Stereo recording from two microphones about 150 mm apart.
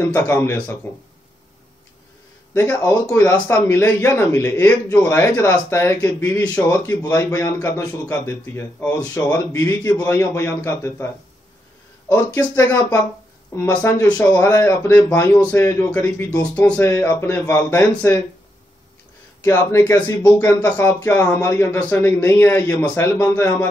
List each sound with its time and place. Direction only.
0.1 s a man's voice: 15° left (ahead or behind)
2.5 s a man's voice: 10° left (ahead or behind)
12.1 s a man's voice: 15° left (ahead or behind)
16.5 s a man's voice: 10° left (ahead or behind)
19.4 s a man's voice: 20° left (ahead or behind)